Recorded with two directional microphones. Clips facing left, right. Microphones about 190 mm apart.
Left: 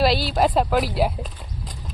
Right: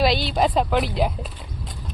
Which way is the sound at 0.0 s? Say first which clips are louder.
Left 1 dB; 5° left (ahead or behind).